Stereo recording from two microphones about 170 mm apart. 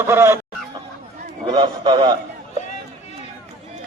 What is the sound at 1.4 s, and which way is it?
Speech, 25° right (ahead or behind).